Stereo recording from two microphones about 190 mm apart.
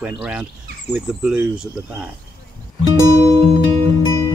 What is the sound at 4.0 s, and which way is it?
Music, 20° right (ahead or behind).